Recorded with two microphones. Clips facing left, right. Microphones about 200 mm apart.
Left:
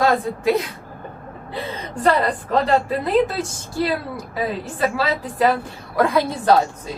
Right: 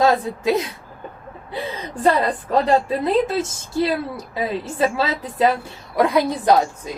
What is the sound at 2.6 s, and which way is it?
A woman's voice, 20° right (ahead or behind).